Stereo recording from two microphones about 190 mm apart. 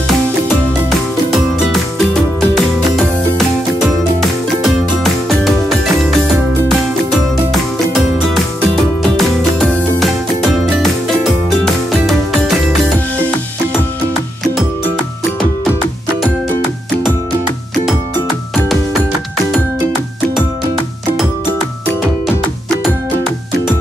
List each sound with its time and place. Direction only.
0.8 s music: centre (ahead or behind)
4.6 s music: centre (ahead or behind)
8.6 s music: centre (ahead or behind)